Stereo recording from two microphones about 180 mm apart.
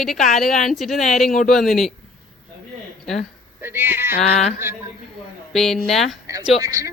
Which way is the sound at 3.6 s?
10° right (ahead or behind).